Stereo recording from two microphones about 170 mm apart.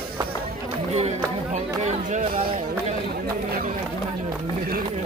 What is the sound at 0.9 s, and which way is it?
Chatter, 40° right (ahead or behind).